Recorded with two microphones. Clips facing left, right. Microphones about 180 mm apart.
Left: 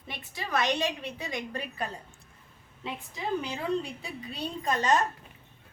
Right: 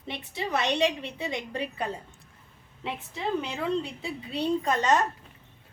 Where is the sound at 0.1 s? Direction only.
25° right (ahead or behind).